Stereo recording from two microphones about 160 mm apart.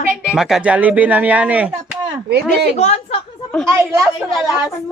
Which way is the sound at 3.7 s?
15° right (ahead or behind).